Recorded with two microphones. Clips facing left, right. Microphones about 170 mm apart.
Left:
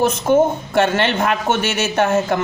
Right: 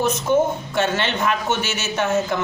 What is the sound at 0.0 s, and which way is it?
Speech, 55° left (ahead or behind).